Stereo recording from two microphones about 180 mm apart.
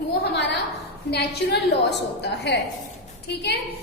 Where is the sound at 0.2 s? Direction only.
70° left (ahead or behind).